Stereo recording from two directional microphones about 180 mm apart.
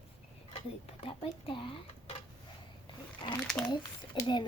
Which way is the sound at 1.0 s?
30° left (ahead or behind).